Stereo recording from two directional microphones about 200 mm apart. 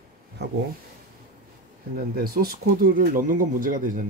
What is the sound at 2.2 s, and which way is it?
Speech, 50° right (ahead or behind).